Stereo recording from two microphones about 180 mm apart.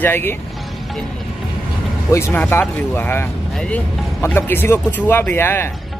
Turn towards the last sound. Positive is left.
turn(degrees=10)  # may be behind; listen again after turning